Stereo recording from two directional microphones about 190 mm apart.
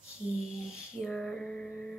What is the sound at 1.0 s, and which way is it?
Speech, centre (ahead or behind).